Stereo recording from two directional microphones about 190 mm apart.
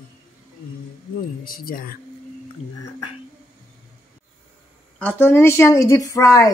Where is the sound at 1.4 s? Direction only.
50° left (ahead or behind).